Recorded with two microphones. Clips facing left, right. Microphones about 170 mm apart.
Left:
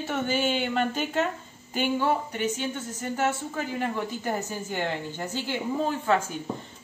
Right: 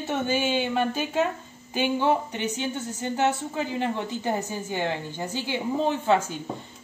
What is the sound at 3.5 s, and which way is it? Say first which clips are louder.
A woman's voice: right 2 dB; 25° right (ahead or behind).